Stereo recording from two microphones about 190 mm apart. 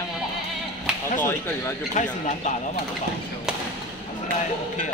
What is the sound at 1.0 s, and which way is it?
Speech, 45° left (ahead or behind).